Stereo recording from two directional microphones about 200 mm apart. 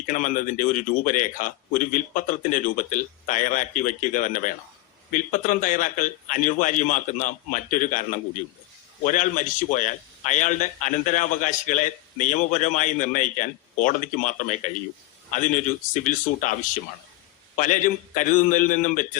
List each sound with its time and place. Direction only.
0.0 s a man's voice: 40° left (ahead or behind)
17.6 s a man's voice: 40° left (ahead or behind)